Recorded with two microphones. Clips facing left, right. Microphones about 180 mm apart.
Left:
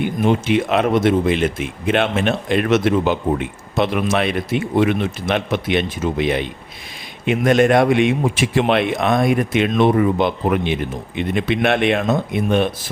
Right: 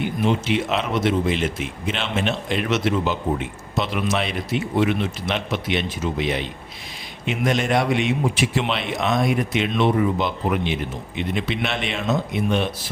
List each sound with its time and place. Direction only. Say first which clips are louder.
0.0 s speech: left 4 dB; 50° left (ahead or behind)